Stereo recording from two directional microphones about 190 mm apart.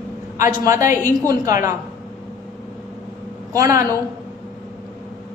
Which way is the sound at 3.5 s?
15° right (ahead or behind).